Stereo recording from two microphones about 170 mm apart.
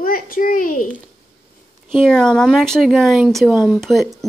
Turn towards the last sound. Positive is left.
turn(degrees=0)  # may be behind; listen again after turning